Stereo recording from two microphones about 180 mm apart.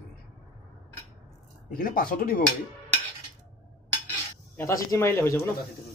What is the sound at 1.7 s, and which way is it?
Speech, 55° left (ahead or behind).